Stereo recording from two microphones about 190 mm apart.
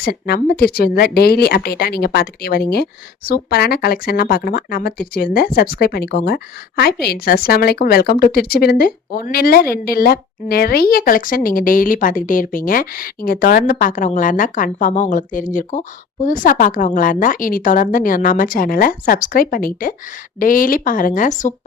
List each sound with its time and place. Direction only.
0.0 s speech: 55° left (ahead or behind)